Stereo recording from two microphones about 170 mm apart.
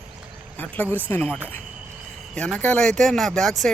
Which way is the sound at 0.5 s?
10° left (ahead or behind).